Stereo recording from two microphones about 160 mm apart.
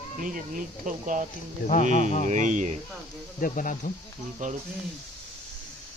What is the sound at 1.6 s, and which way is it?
Speech, 55° left (ahead or behind).